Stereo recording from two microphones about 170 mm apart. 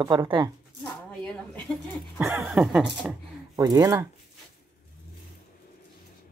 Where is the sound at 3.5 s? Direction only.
20° right (ahead or behind).